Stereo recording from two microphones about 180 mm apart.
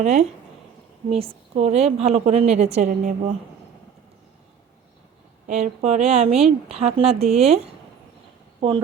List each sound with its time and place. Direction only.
0.0 s a woman's voice: 40° right (ahead or behind)
5.5 s a woman's voice: 40° right (ahead or behind)